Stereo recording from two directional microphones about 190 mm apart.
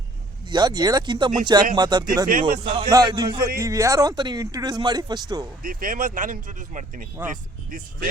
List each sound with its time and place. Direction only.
0.4 s speech: 25° right (ahead or behind)
5.6 s speech: 45° right (ahead or behind)